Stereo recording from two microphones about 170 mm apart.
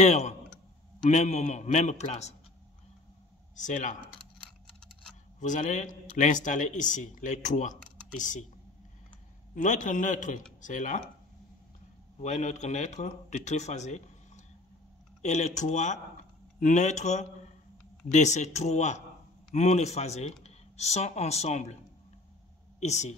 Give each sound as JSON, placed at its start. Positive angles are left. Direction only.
{"t": 0.0, "sound": "speech", "side_deg": 40}
{"t": 3.5, "sound": "speech", "side_deg": 45}
{"t": 5.4, "sound": "speech", "side_deg": 45}
{"t": 9.6, "sound": "speech", "side_deg": 45}
{"t": 12.2, "sound": "speech", "side_deg": 45}
{"t": 22.8, "sound": "speech", "side_deg": 40}